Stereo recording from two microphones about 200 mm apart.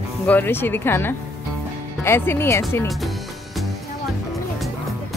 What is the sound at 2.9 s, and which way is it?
Music, centre (ahead or behind).